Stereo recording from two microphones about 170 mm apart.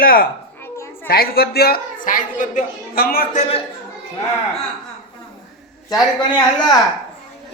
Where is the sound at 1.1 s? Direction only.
65° left (ahead or behind); by 3.6 s 40° left (ahead or behind).